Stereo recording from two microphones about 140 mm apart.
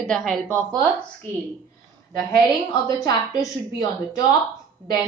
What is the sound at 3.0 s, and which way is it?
A woman's voice, 25° left (ahead or behind).